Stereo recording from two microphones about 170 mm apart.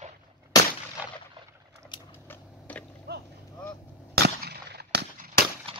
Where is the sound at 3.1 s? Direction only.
70° right (ahead or behind).